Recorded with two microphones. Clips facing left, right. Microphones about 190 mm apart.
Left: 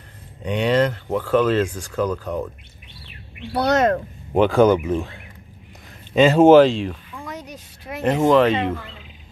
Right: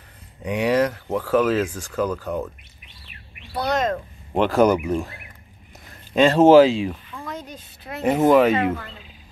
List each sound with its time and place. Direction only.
0.4 s speech: 10° right (ahead or behind)
3.5 s speech: 75° left (ahead or behind)
4.3 s speech: centre (ahead or behind)
6.6 s speech: 5° right (ahead or behind)
7.1 s a sound: 10° left (ahead or behind)
8.0 s speech: 10° right (ahead or behind)